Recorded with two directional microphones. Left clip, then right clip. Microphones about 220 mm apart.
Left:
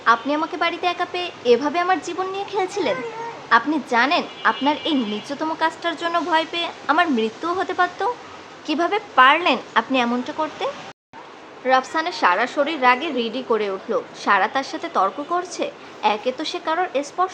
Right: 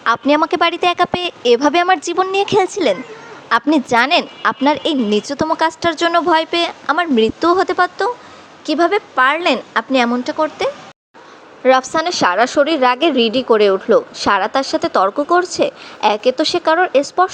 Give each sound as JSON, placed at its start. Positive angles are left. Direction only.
{"t": 0.0, "sound": "a woman's voice", "side_deg": -40}